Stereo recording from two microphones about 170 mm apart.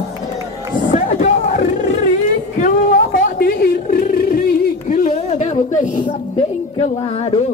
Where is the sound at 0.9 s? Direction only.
45° left (ahead or behind).